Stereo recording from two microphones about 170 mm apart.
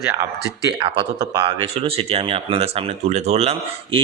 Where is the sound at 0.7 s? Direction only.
30° right (ahead or behind).